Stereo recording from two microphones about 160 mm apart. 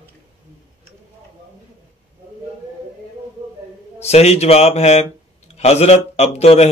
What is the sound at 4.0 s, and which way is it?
Speech, 40° left (ahead or behind).